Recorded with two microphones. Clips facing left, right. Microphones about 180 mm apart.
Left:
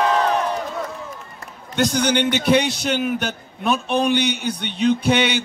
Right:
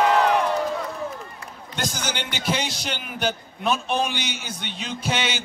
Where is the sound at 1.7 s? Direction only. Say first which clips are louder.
Left 11 dB; 60° left (ahead or behind).